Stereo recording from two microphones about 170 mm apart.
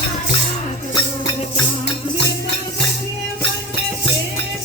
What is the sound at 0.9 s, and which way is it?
Music, 25° left (ahead or behind).